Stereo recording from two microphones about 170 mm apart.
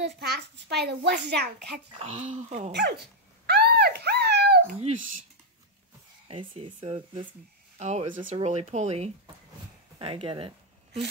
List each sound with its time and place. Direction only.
0.0 s a child's voice: 75° right (ahead or behind)
2.0 s speech: 40° right (ahead or behind)
2.7 s a child's voice: 75° right (ahead or behind)
3.4 s a sound: 75° right (ahead or behind)
6.2 s speech: 30° right (ahead or behind)
7.8 s speech: 40° right (ahead or behind)